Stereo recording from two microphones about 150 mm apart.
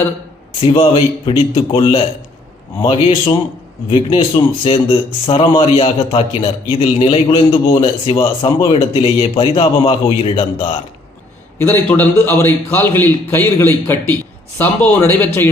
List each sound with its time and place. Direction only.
0.6 s speech: 35° left (ahead or behind)
11.5 s a man's voice: 15° left (ahead or behind)